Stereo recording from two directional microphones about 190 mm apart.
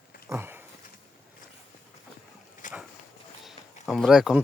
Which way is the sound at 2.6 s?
40° left (ahead or behind).